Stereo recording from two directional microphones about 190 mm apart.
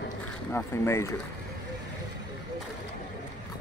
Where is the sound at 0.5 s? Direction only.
15° left (ahead or behind).